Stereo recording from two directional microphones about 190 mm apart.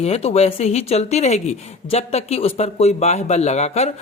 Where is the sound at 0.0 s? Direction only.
35° left (ahead or behind).